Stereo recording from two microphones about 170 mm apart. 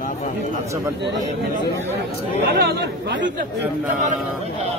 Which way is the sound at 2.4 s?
70° right (ahead or behind).